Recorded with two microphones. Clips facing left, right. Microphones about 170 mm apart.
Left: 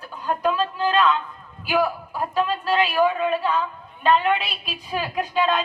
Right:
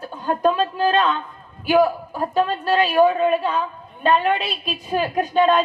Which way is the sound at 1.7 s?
40° right (ahead or behind).